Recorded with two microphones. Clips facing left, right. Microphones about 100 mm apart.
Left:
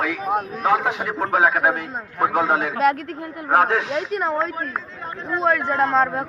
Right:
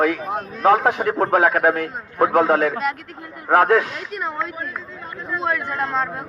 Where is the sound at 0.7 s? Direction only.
45° right (ahead or behind).